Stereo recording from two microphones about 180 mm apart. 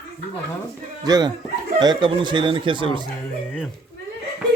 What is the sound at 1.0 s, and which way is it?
Speech, 20° right (ahead or behind).